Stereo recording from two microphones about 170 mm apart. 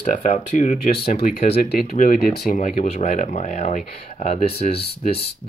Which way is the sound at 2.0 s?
55° left (ahead or behind).